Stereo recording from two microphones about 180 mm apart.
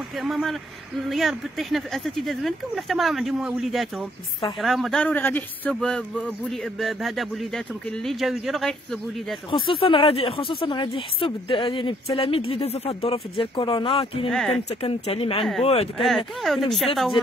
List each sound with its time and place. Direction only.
0.1 s speech: centre (ahead or behind)
9.5 s speech: 30° left (ahead or behind)
16.0 s speech: centre (ahead or behind)